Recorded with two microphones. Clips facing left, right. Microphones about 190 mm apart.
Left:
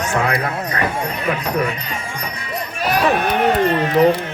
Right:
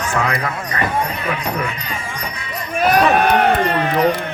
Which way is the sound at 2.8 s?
55° right (ahead or behind).